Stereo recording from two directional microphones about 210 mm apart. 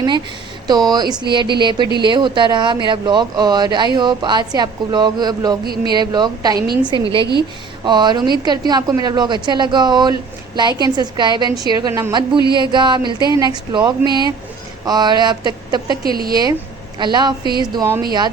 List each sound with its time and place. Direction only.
0.7 s a woman's voice: 20° right (ahead or behind)
16.0 s speech: 45° right (ahead or behind)
16.3 s a woman's voice: 20° right (ahead or behind)